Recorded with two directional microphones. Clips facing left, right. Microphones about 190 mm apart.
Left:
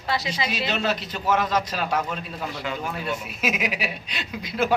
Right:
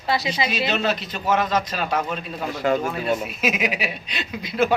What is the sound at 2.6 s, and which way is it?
Speech, 50° right (ahead or behind).